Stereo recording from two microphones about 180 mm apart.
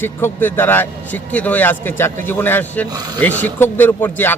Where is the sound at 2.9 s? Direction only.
20° right (ahead or behind).